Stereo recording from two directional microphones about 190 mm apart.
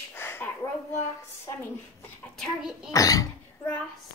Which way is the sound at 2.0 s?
5° left (ahead or behind).